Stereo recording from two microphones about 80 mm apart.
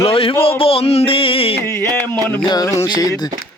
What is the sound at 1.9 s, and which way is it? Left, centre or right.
Speech, left.